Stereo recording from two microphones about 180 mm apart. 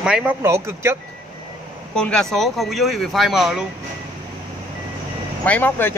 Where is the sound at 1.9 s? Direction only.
5° left (ahead or behind).